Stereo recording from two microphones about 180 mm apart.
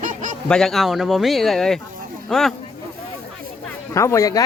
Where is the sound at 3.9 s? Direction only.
15° left (ahead or behind).